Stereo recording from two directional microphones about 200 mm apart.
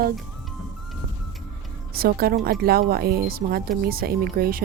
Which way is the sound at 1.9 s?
50° right (ahead or behind).